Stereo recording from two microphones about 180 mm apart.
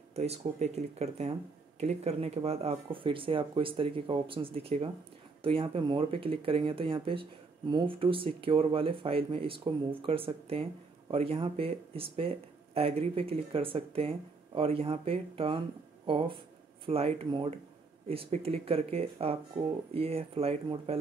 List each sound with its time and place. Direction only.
0.1 s speech: 35° right (ahead or behind)